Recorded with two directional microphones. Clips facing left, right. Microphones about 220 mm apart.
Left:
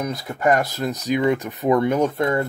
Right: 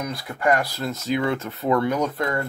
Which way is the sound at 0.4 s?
20° left (ahead or behind).